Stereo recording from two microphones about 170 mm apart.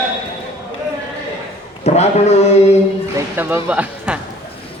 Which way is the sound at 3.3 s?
10° right (ahead or behind).